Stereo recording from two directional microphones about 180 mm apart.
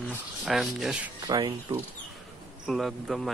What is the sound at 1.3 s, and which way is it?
Speech, 25° right (ahead or behind).